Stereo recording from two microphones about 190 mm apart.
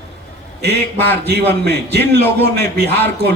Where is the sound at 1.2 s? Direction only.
60° right (ahead or behind).